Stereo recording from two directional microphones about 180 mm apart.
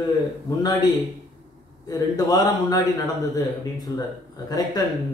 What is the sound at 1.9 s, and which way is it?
Speech, 20° left (ahead or behind).